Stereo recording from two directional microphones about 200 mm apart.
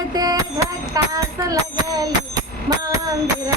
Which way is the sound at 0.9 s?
20° right (ahead or behind).